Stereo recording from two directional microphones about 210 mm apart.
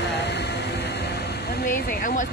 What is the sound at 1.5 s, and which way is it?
Speech, 45° left (ahead or behind).